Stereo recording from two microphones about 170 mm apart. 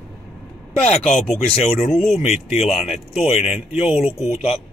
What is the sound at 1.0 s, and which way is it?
Speech, 5° left (ahead or behind).